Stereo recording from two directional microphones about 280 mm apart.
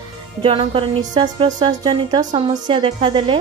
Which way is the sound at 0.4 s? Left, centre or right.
Centre.